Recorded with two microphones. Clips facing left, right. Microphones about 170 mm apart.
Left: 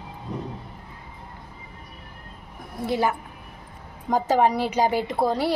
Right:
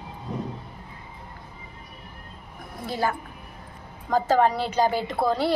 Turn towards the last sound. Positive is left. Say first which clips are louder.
# left 1 dB
turn(degrees=10)  # may be behind; listen again after turning